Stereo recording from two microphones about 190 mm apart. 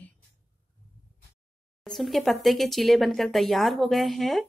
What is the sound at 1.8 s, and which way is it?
Speech, centre (ahead or behind).